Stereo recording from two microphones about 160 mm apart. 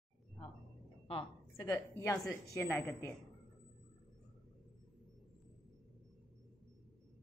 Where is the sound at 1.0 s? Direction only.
35° left (ahead or behind).